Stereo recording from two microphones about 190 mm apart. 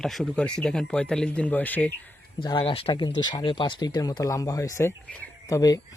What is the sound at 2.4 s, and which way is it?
Speech, 25° left (ahead or behind).